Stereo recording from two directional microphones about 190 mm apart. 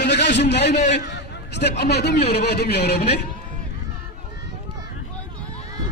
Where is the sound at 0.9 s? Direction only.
65° left (ahead or behind).